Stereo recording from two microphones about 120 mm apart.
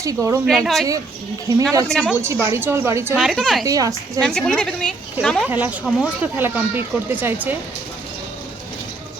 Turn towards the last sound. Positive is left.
turn(degrees=-15)  # may be behind; listen again after turning